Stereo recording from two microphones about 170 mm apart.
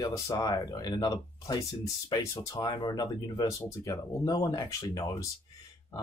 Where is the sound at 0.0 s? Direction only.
20° left (ahead or behind).